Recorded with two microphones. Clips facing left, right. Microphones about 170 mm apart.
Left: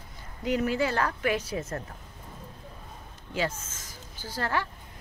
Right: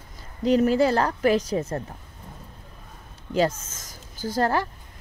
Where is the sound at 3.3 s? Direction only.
40° right (ahead or behind).